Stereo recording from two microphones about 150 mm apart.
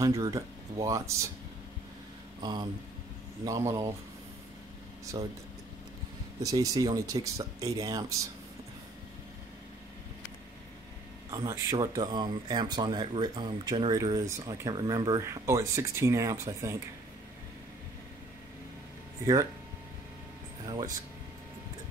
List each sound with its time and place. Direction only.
0.0 s speech: 20° right (ahead or behind)
2.4 s speech: 30° right (ahead or behind)
6.4 s speech: 25° right (ahead or behind)
11.2 s speech: 20° right (ahead or behind)
20.6 s speech: 25° right (ahead or behind)